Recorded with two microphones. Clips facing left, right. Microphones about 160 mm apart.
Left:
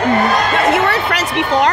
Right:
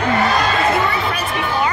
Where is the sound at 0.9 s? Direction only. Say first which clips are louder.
Left 3 dB; 75° left (ahead or behind).